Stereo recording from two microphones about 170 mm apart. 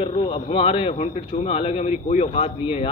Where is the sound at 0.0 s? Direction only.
30° left (ahead or behind).